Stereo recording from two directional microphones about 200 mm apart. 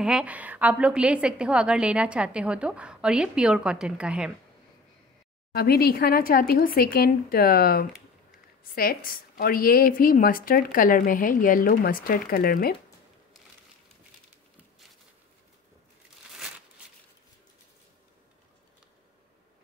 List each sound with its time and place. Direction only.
0.0 s a woman's voice: 5° right (ahead or behind)
5.5 s a woman's voice: 50° left (ahead or behind)